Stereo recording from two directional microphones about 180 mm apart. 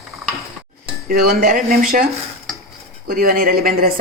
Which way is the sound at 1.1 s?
55° right (ahead or behind).